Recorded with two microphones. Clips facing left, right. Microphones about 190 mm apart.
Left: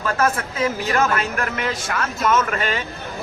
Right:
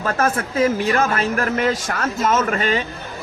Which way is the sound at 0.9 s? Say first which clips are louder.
Right 1 dB; 35° right (ahead or behind).